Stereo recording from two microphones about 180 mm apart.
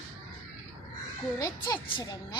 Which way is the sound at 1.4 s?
25° left (ahead or behind).